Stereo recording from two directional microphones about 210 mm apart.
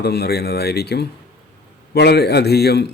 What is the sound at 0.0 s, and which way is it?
A man's voice, 50° left (ahead or behind).